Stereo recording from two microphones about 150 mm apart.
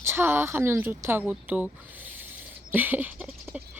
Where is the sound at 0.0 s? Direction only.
15° right (ahead or behind).